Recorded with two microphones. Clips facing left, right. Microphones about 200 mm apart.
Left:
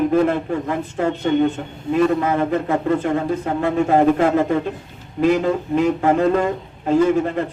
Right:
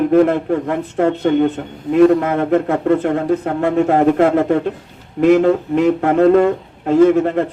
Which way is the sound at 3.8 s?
70° right (ahead or behind).